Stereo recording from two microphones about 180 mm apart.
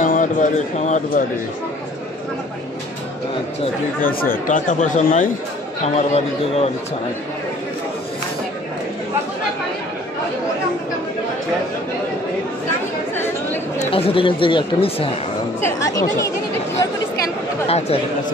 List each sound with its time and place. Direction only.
0.0 s speech: 45° left (ahead or behind)
4.0 s speech: 55° left (ahead or behind); by 6.7 s 35° left (ahead or behind)
13.7 s speech: 30° left (ahead or behind)
15.6 s speech: 15° left (ahead or behind)
17.6 s speech: 35° left (ahead or behind)